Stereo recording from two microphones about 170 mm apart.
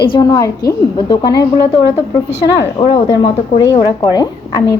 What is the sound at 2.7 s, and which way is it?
A woman's voice, 25° left (ahead or behind).